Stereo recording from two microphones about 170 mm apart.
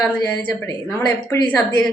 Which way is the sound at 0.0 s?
10° left (ahead or behind).